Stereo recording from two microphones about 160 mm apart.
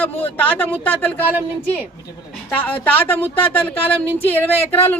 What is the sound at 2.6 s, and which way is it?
Speech, 10° left (ahead or behind).